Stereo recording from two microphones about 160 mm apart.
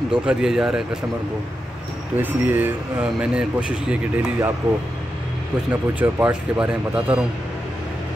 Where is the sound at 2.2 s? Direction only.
10° right (ahead or behind).